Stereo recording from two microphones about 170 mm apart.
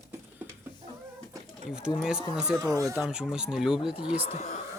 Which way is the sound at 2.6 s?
20° right (ahead or behind).